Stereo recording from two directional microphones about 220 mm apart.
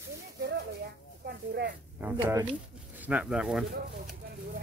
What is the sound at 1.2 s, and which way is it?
Speech, 45° right (ahead or behind).